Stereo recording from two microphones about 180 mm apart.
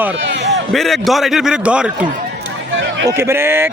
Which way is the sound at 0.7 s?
Centre (ahead or behind).